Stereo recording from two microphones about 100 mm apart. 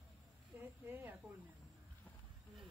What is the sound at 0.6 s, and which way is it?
Speech, 20° right (ahead or behind).